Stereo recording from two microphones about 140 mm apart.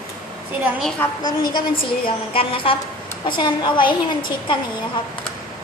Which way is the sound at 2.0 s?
40° left (ahead or behind).